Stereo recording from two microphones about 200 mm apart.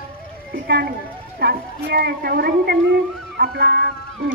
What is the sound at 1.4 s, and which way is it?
Speech, 55° right (ahead or behind).